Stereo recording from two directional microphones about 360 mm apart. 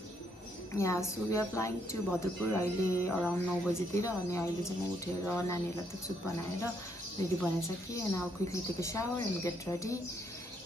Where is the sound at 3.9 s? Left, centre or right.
Centre.